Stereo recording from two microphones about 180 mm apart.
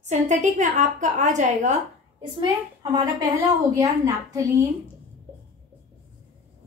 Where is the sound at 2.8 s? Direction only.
25° right (ahead or behind).